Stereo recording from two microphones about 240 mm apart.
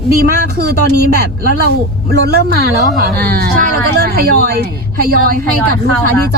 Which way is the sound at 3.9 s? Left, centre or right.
Right.